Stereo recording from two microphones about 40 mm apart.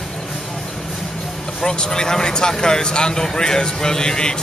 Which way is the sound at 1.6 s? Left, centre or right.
Centre.